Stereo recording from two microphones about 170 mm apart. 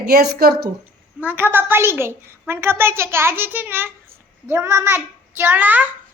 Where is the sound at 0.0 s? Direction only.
65° right (ahead or behind).